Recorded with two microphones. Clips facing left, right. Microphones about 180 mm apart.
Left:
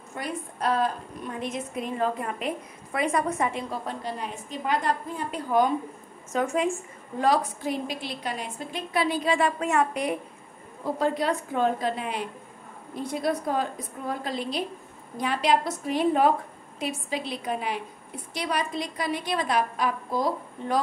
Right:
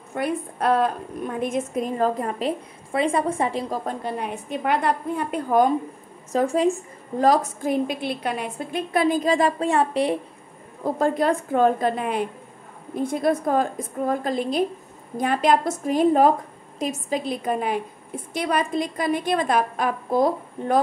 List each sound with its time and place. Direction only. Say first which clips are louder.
0.1 s a woman's voice: right 8 dB; 60° right (ahead or behind); by 3.8 s 35° right (ahead or behind)
3.8 s a woman's voice: right 5 dB; 55° right (ahead or behind)
6.3 s a woman's voice: right 5 dB; 35° right (ahead or behind)
10.8 s a woman's voice: right 4 dB; 50° right (ahead or behind)